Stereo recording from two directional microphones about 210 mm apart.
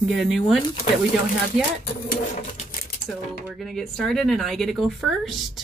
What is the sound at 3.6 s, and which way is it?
Speech, centre (ahead or behind).